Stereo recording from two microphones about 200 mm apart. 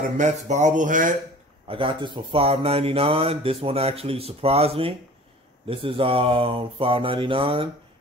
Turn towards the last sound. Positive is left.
turn(degrees=-25)  # may be behind; listen again after turning